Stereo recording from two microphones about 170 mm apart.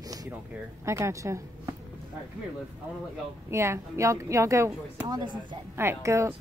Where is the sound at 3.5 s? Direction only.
15° right (ahead or behind).